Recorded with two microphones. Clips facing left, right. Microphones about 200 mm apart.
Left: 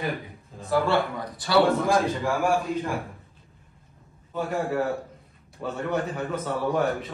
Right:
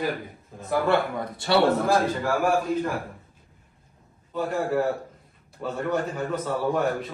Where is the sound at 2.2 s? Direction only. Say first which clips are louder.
Right 1 dB; centre (ahead or behind).